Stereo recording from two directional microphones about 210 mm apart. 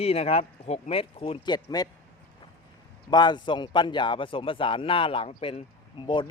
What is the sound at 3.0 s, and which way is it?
A man's voice, 20° left (ahead or behind).